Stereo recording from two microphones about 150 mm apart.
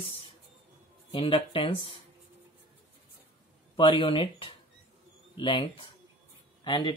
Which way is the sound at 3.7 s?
35° left (ahead or behind).